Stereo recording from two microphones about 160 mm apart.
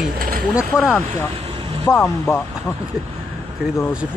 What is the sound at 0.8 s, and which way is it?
Speech, 5° right (ahead or behind).